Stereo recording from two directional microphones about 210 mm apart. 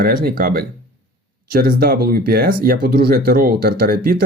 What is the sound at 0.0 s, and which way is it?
Speech, 45° right (ahead or behind).